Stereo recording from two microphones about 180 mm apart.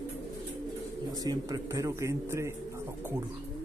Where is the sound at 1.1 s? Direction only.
20° right (ahead or behind).